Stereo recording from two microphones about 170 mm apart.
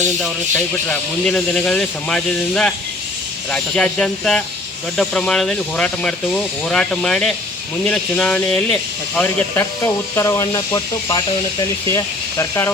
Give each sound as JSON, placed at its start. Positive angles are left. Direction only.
{"t": 0.9, "sound": "speech", "side_deg": 5}